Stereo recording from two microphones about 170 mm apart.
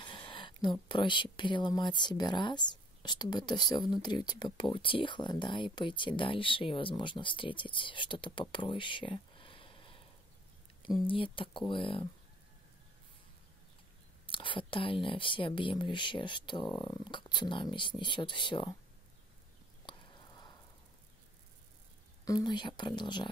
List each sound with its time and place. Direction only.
0.0 s speech: 30° left (ahead or behind)
14.2 s speech: 30° left (ahead or behind)
19.9 s a sound: 25° left (ahead or behind)
22.2 s speech: 25° left (ahead or behind)